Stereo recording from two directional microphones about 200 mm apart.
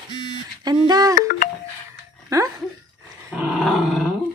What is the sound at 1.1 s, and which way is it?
Music, 45° left (ahead or behind).